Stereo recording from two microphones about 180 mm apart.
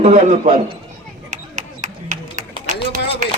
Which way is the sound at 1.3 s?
45° right (ahead or behind).